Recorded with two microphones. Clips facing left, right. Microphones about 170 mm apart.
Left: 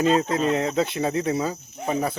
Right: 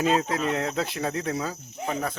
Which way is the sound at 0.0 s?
Centre (ahead or behind).